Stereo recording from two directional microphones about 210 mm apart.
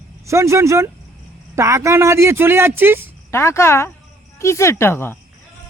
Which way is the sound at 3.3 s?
10° left (ahead or behind).